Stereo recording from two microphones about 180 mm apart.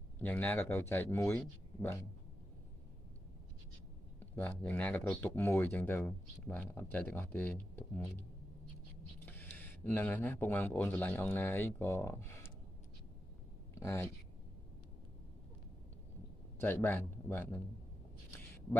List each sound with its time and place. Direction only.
0.2 s speech: 10° left (ahead or behind)
4.4 s speech: 10° left (ahead or behind)
9.2 s speech: 10° left (ahead or behind)
13.7 s speech: 15° left (ahead or behind)
16.5 s speech: 10° left (ahead or behind)